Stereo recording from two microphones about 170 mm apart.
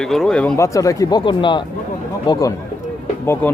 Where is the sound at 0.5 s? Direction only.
20° left (ahead or behind).